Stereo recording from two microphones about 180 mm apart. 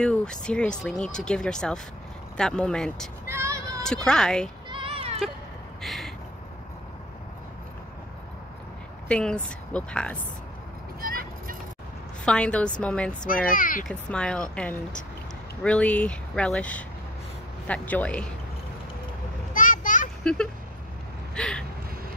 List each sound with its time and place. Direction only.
0.0 s speech: 5° left (ahead or behind)
3.3 s child singing: 15° right (ahead or behind)
3.8 s speech: 5° left (ahead or behind)
4.6 s a sound: 30° right (ahead or behind)
5.8 s a sound: centre (ahead or behind)
9.1 s speech: 5° left (ahead or behind)
11.0 s music: 55° right (ahead or behind)
12.3 s speech: 5° left (ahead or behind)
13.3 s speech: 50° left (ahead or behind)
13.8 s speech: 5° left (ahead or behind)
19.5 s children playing: 50° left (ahead or behind)
21.4 s vehicle: 5° left (ahead or behind)